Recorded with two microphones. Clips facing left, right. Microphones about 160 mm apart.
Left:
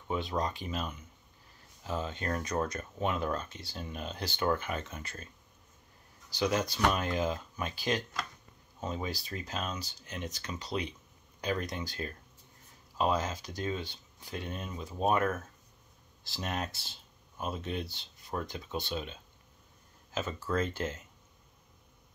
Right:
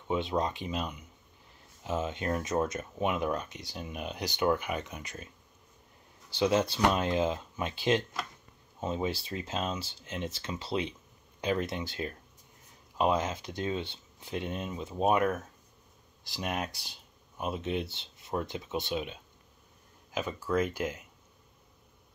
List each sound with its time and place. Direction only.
0.1 s speech: 20° right (ahead or behind)
6.3 s speech: 25° right (ahead or behind)